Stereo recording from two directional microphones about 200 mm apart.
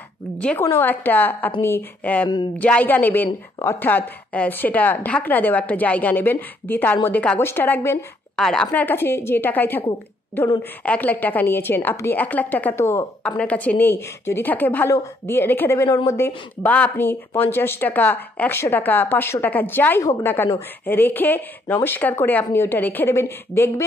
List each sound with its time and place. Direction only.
0.4 s speech: 10° left (ahead or behind)
3.3 s speech: 20° left (ahead or behind)
3.8 s speech: 10° left (ahead or behind)
10.9 s speech: 10° left (ahead or behind)